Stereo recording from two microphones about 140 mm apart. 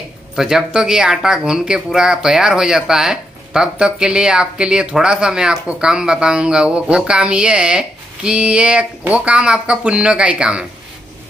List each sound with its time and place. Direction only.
0.4 s speech: 5° right (ahead or behind)